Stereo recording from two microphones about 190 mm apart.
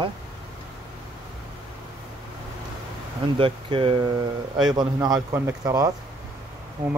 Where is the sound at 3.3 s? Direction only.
25° right (ahead or behind).